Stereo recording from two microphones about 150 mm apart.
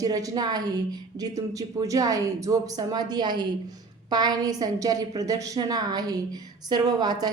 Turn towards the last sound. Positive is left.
turn(degrees=-25)  # may be behind; listen again after turning